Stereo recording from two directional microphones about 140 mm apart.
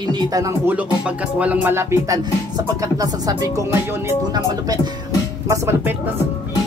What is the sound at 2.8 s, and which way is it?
Speech, 25° right (ahead or behind).